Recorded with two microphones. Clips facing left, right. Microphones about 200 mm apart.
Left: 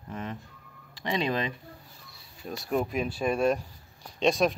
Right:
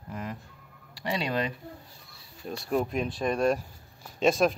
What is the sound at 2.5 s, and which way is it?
A child's voice, centre (ahead or behind).